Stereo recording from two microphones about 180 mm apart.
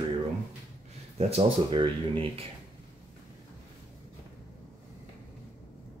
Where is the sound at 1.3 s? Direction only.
25° right (ahead or behind).